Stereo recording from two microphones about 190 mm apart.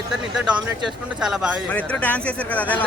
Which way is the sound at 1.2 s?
5° right (ahead or behind).